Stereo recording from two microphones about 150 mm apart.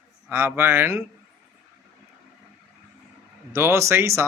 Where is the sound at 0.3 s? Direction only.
15° right (ahead or behind).